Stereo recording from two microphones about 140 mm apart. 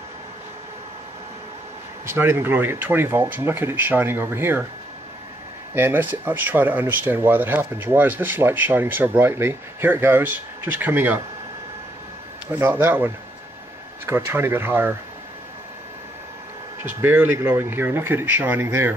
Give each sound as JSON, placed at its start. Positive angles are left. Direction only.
{"t": 2.0, "sound": "speech", "side_deg": -15}
{"t": 5.8, "sound": "speech", "side_deg": -15}
{"t": 12.4, "sound": "speech", "side_deg": -15}
{"t": 16.8, "sound": "speech", "side_deg": -15}